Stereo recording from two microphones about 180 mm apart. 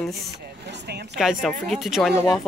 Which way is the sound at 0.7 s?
65° right (ahead or behind).